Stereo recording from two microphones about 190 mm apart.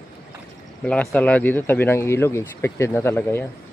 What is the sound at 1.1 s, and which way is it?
Speech, 5° left (ahead or behind).